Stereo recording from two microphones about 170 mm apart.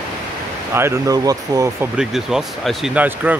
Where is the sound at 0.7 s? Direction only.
15° right (ahead or behind).